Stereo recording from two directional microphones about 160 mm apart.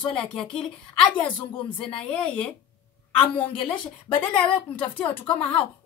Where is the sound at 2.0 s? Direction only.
5° left (ahead or behind).